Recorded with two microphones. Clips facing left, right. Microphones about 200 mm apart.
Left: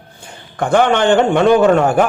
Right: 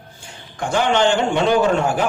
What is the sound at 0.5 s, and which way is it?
A man's voice, 60° left (ahead or behind).